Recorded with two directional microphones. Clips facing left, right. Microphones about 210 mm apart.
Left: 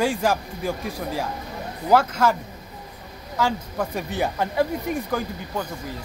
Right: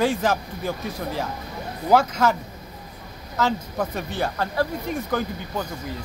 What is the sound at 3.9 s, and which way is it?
Speech, 15° left (ahead or behind).